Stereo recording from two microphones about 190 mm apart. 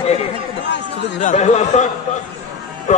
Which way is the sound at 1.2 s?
40° left (ahead or behind).